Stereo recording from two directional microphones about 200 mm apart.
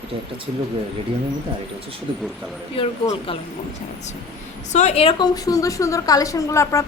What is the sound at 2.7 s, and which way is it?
Speech, 25° left (ahead or behind).